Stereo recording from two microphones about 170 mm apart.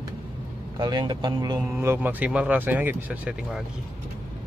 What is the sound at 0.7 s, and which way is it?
Speech, 25° right (ahead or behind).